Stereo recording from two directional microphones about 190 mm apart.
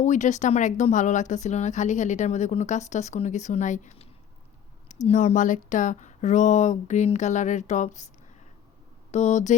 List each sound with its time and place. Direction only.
0.0 s speech: 40° left (ahead or behind)
9.1 s speech: 35° left (ahead or behind)